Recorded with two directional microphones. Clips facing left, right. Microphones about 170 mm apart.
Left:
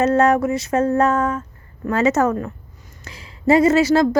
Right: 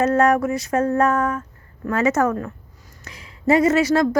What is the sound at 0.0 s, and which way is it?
A woman's voice, 25° left (ahead or behind).